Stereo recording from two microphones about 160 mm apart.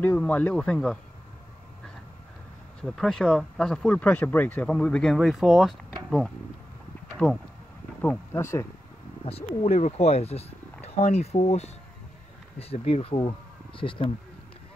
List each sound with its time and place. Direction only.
0.0 s speech: 10° left (ahead or behind)
2.8 s speech: centre (ahead or behind)
9.2 s speech: 35° left (ahead or behind)